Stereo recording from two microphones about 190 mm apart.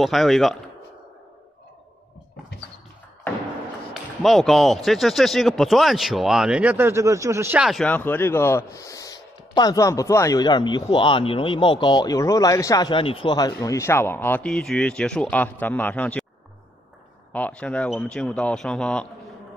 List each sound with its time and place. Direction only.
0.0 s speech: centre (ahead or behind)
3.9 s speech: centre (ahead or behind)
17.3 s speech: 5° left (ahead or behind)